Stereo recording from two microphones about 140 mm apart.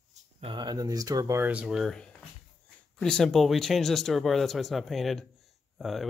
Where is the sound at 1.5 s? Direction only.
5° right (ahead or behind).